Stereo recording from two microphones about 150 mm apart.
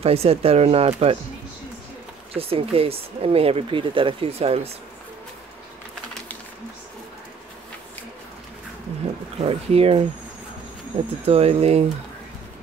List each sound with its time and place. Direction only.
0.0 s speech: 40° right (ahead or behind)
2.3 s speech: 40° right (ahead or behind)
9.4 s speech: 40° right (ahead or behind)